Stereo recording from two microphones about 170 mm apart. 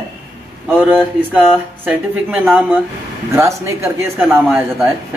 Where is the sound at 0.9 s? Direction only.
10° right (ahead or behind).